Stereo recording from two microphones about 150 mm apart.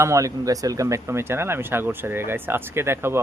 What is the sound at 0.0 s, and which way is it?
Speech, 20° right (ahead or behind).